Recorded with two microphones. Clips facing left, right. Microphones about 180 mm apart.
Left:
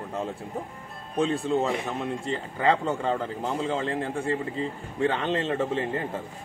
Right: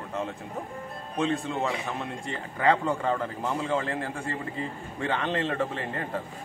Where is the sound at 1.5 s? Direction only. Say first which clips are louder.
Left 6 dB; 35° left (ahead or behind).